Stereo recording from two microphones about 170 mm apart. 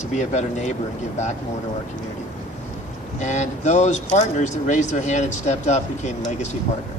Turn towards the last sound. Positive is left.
turn(degrees=45)  # may be behind; listen again after turning